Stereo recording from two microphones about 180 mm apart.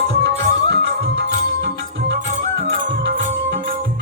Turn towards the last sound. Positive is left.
turn(degrees=-50)  # may be behind; listen again after turning